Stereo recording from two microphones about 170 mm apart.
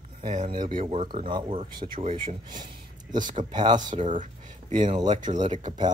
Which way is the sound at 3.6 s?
25° right (ahead or behind).